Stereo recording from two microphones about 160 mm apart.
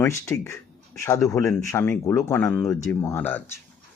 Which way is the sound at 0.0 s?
15° left (ahead or behind).